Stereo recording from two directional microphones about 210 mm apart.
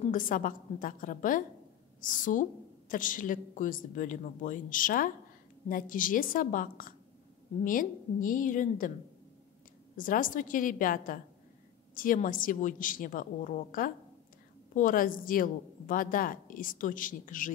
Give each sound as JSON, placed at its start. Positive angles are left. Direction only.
{"t": 0.1, "sound": "a woman's voice", "side_deg": 40}
{"t": 9.9, "sound": "a woman's voice", "side_deg": 40}